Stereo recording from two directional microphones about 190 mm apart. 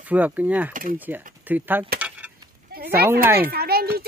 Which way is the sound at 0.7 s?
45° right (ahead or behind).